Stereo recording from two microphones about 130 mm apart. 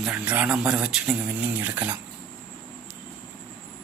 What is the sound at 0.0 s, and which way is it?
Speech, 10° right (ahead or behind).